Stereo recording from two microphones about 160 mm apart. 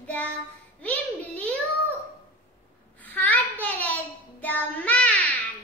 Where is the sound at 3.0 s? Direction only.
10° left (ahead or behind).